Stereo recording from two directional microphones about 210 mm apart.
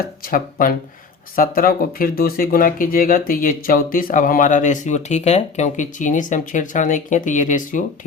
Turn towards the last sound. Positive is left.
turn(degrees=40)  # may be behind; listen again after turning